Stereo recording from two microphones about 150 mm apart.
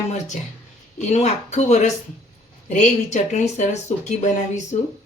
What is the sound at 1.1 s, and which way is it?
Speech, 50° left (ahead or behind).